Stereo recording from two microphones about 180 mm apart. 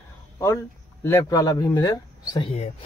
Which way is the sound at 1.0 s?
15° left (ahead or behind).